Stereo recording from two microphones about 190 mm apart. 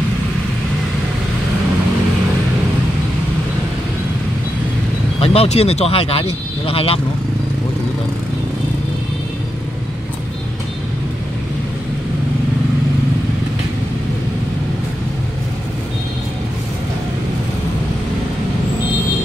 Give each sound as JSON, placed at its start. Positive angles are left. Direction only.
{"t": 5.2, "sound": "speech", "side_deg": 30}